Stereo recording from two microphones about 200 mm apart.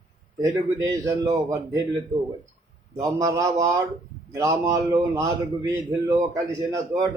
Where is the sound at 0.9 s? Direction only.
15° right (ahead or behind).